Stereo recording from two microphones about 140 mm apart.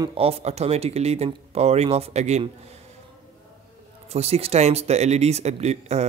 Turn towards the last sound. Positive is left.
turn(degrees=-50)  # may be behind; listen again after turning